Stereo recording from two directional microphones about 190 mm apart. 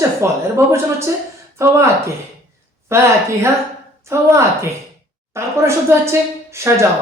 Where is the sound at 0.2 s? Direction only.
15° right (ahead or behind).